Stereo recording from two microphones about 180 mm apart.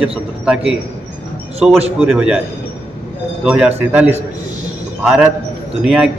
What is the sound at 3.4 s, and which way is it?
A man's voice, 5° right (ahead or behind).